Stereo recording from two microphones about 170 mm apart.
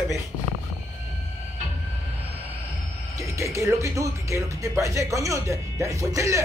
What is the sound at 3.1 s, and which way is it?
Speech, 20° right (ahead or behind).